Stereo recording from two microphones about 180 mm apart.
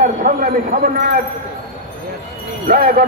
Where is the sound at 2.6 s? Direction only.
55° right (ahead or behind).